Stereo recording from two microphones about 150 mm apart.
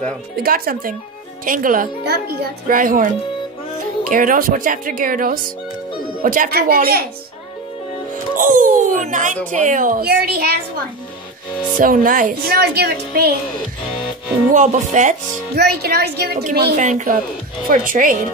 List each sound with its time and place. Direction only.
0.4 s speech: 75° right (ahead or behind)
4.1 s a woman's voice: 65° right (ahead or behind); by 7.1 s 85° right
8.4 s a sound: 60° right (ahead or behind)
9.5 s a woman's voice: 60° right (ahead or behind); by 10.6 s 90° right
11.8 s speech: 65° right (ahead or behind); by 13.3 s 90° right
14.5 s speech: 55° right (ahead or behind); by 16.4 s 90° right
16.7 s a woman's voice: 55° right (ahead or behind)